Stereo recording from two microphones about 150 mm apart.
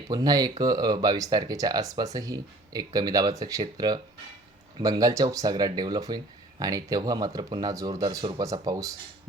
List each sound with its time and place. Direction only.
0.1 s speech: 25° right (ahead or behind)